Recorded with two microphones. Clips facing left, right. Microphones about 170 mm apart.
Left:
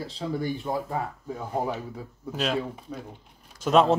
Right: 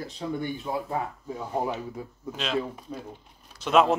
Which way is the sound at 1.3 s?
50° left (ahead or behind).